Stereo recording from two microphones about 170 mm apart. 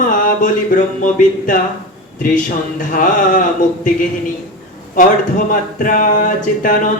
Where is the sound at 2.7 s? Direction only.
50° left (ahead or behind).